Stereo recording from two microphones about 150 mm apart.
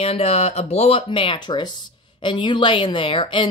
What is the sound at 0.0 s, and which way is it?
Speech, 40° left (ahead or behind).